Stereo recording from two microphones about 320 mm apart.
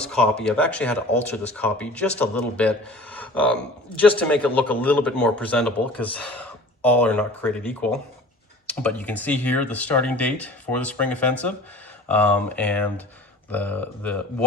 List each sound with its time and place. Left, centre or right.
0.0 s speech: centre